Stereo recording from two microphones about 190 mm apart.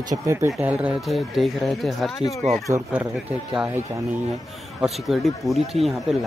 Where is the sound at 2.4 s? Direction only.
35° right (ahead or behind).